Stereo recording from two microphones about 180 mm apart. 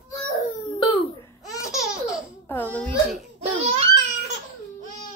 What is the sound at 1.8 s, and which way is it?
Laughter, 5° right (ahead or behind).